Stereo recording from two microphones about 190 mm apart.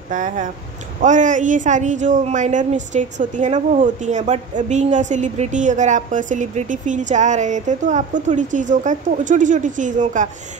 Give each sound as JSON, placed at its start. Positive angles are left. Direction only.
{"t": 0.1, "sound": "a woman's voice", "side_deg": -40}